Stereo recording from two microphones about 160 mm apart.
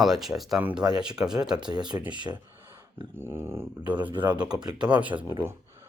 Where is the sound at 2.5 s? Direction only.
15° right (ahead or behind).